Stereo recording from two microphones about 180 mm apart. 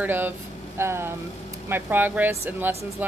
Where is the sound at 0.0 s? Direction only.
10° right (ahead or behind).